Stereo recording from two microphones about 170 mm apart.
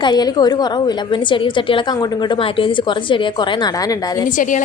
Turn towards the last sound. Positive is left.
turn(degrees=50)  # may be behind; listen again after turning